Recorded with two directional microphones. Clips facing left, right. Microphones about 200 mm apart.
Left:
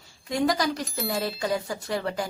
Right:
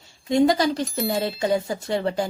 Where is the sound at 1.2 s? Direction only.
25° right (ahead or behind).